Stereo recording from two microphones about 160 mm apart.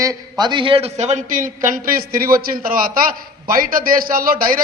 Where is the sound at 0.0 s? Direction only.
25° right (ahead or behind).